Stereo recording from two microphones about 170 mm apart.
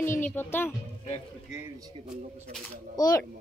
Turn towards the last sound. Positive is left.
turn(degrees=20)  # may be behind; listen again after turning